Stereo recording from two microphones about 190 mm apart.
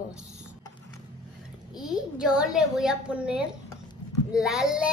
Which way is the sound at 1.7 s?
5° right (ahead or behind).